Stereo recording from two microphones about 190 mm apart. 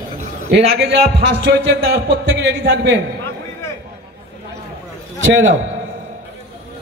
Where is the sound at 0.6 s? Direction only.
60° right (ahead or behind).